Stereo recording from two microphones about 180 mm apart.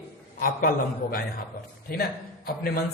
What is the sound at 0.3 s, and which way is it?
Speech, 50° left (ahead or behind).